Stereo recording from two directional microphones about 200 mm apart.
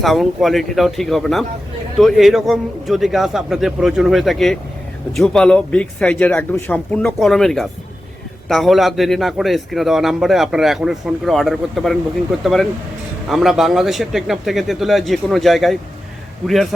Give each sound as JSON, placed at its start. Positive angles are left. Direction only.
{"t": 0.0, "sound": "a man's voice", "side_deg": 0}